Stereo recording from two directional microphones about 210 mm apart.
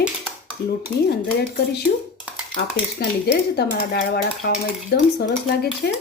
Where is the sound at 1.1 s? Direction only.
50° left (ahead or behind).